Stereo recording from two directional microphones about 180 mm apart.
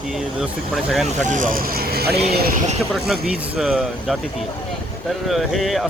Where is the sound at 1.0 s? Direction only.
45° right (ahead or behind); by 2.1 s 60° right (ahead or behind).